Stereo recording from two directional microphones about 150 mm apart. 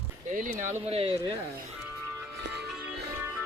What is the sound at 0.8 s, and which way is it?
Speech, 40° right (ahead or behind).